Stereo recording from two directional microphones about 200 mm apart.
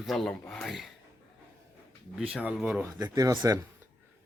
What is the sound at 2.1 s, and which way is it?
Speech, 5° right (ahead or behind).